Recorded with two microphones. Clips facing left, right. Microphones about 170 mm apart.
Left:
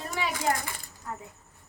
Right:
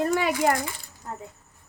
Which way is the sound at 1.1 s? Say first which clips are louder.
Right 1 dB; 35° right (ahead or behind).